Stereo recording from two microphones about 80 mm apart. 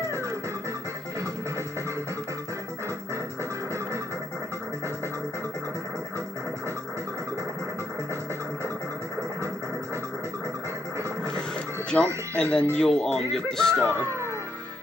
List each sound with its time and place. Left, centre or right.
11.9 s speech: centre